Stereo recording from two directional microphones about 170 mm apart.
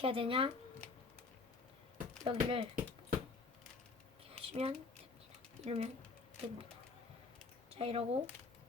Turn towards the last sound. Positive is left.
turn(degrees=-35)  # may be behind; listen again after turning